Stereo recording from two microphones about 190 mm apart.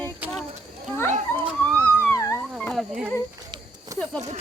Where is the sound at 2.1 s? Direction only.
15° left (ahead or behind).